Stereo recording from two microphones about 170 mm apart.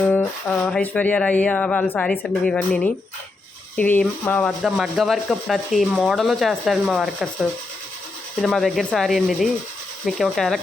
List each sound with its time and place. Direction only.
0.0 s speech: 10° left (ahead or behind)